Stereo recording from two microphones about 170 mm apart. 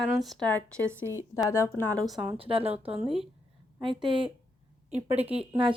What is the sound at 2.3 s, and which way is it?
A woman's voice, 35° right (ahead or behind).